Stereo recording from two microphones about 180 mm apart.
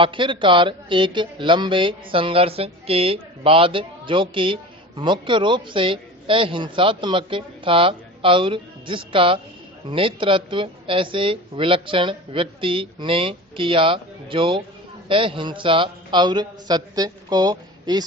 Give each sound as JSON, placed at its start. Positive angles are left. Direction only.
{"t": 0.0, "sound": "a man's voice", "side_deg": -30}